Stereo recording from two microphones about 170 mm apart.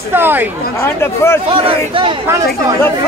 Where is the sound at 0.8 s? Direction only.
15° left (ahead or behind).